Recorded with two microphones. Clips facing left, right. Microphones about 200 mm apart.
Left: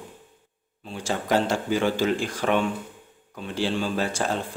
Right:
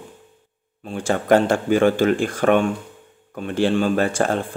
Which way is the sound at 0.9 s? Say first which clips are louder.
Right 7 dB; 55° right (ahead or behind).